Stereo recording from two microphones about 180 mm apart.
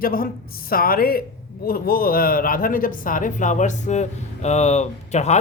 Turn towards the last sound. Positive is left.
turn(degrees=40)  # may be behind; listen again after turning